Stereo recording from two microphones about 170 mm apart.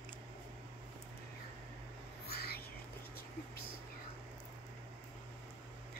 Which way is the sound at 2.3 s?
65° left (ahead or behind).